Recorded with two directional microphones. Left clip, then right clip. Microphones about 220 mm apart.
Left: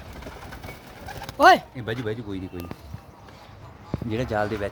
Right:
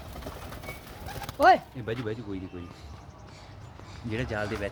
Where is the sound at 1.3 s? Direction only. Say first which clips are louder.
Left 5 dB; 50° left (ahead or behind).